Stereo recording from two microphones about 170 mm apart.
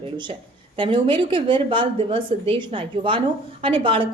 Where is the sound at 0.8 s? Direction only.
30° right (ahead or behind).